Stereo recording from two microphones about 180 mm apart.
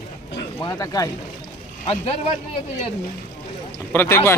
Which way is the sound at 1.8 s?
35° left (ahead or behind).